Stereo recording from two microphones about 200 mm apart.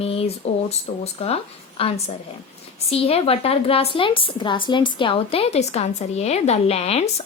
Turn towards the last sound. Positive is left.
turn(degrees=30)  # may be behind; listen again after turning